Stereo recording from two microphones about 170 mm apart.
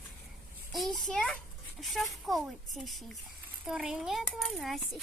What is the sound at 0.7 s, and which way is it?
Speech, centre (ahead or behind).